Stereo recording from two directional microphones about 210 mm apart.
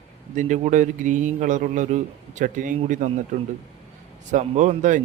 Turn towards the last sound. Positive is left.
turn(degrees=-35)  # may be behind; listen again after turning